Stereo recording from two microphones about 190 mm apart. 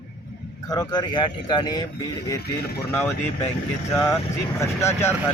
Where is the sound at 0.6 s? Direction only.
20° left (ahead or behind).